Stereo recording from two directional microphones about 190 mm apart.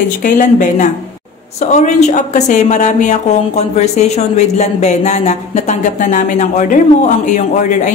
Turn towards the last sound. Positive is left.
turn(degrees=40)  # may be behind; listen again after turning